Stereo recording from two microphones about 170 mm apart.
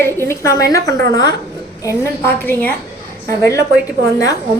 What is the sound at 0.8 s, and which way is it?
Speech, 80° right.